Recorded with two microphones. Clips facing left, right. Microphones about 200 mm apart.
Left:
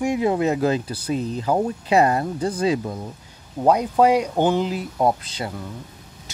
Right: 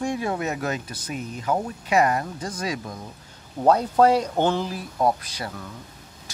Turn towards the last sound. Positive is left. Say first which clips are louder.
# left 4 dB
turn(degrees=25)  # may be behind; listen again after turning